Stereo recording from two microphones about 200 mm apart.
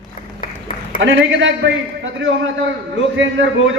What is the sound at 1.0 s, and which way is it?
A man's voice, 70° right (ahead or behind).